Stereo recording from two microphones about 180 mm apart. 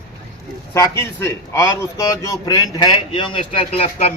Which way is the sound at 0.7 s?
15° left (ahead or behind).